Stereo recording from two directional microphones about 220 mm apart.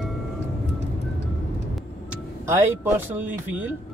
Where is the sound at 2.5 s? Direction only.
10° right (ahead or behind).